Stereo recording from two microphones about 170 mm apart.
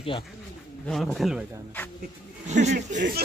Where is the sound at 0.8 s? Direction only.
Centre (ahead or behind).